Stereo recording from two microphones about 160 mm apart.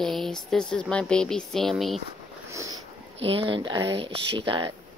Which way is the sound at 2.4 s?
20° right (ahead or behind).